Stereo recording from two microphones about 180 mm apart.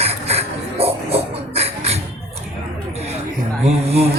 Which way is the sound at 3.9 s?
35° right (ahead or behind).